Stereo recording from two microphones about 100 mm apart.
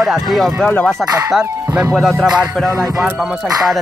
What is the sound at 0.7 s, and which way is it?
Music, 15° left (ahead or behind).